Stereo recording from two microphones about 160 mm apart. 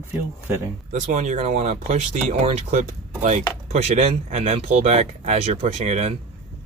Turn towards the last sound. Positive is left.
turn(degrees=-45)  # may be behind; listen again after turning